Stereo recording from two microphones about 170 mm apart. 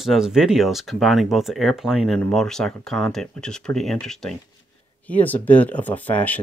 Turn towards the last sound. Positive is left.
turn(degrees=10)  # may be behind; listen again after turning